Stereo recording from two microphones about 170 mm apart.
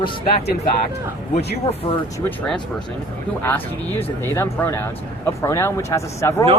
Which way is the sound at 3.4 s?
10° left (ahead or behind).